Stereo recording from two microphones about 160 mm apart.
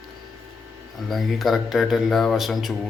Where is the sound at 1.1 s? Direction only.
Centre (ahead or behind).